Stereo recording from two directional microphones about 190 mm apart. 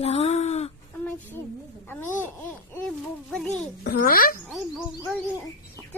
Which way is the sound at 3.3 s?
5° left (ahead or behind).